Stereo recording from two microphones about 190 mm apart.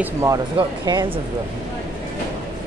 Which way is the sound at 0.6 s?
25° right (ahead or behind).